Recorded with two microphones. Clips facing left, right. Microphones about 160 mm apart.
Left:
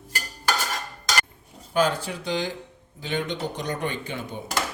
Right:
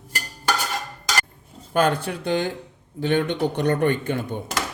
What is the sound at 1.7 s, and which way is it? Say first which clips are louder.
A man's voice: right 3 dB; 55° right (ahead or behind).